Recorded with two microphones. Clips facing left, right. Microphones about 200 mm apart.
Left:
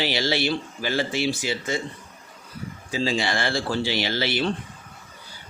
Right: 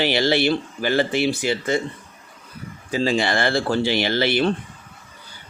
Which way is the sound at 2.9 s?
55° right (ahead or behind).